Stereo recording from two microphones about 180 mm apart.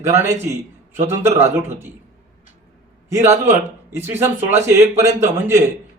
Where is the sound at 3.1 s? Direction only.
15° right (ahead or behind).